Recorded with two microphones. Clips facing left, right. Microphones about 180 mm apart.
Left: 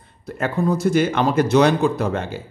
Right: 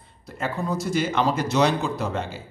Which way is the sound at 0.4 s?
55° left (ahead or behind).